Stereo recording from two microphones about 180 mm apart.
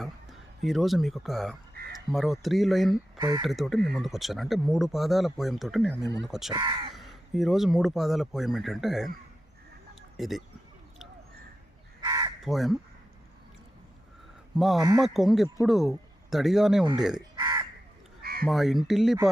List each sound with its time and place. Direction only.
0.6 s speech: centre (ahead or behind)
3.2 s speech: 25° right (ahead or behind)
3.4 s speech: centre (ahead or behind)
6.5 s speech: 25° right (ahead or behind)
6.9 s speech: centre (ahead or behind)
10.2 s speech: centre (ahead or behind)
12.0 s crow: 25° right (ahead or behind)
12.5 s speech: centre (ahead or behind)
14.8 s speech: 20° right (ahead or behind)
15.0 s speech: centre (ahead or behind)
17.3 s crow: 25° right (ahead or behind)
18.2 s crow: 55° right (ahead or behind)
18.4 s speech: centre (ahead or behind)